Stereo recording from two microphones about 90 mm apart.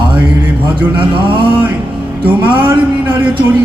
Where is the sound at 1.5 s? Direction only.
25° right (ahead or behind).